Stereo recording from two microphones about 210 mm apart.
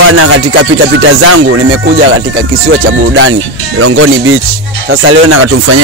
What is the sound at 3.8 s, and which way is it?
Speech, 85° right.